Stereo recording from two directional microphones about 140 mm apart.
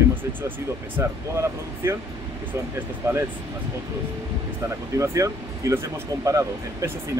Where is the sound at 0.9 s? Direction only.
20° right (ahead or behind).